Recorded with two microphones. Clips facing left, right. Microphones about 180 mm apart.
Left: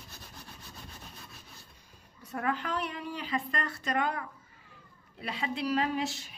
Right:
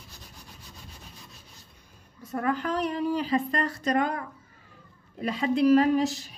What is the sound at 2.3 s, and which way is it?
A woman's voice, 40° right (ahead or behind).